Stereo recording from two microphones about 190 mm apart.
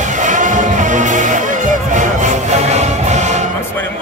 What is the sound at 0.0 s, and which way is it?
Music, 40° right (ahead or behind).